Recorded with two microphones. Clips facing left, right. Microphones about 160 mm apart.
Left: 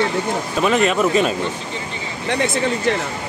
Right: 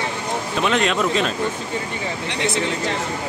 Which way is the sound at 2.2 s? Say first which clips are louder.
Left 6 dB; 50° left (ahead or behind).